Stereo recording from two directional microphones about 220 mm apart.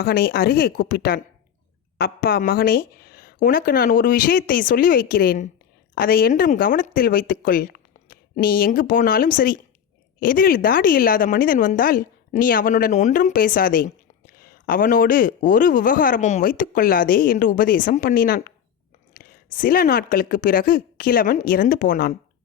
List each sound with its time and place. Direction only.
0.0 s a woman's voice: 45° left (ahead or behind)